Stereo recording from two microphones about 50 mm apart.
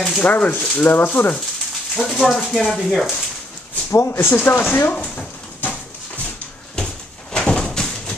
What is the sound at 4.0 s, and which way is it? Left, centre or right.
Speech, left.